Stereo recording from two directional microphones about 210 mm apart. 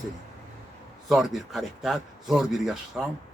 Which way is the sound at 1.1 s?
Centre (ahead or behind).